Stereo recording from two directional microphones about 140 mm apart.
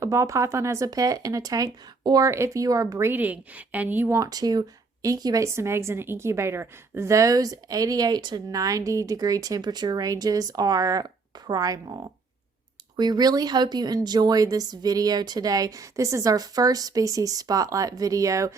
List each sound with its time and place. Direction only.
0.0 s a woman's voice: 20° right (ahead or behind)
4.2 s a woman's voice: 25° right (ahead or behind)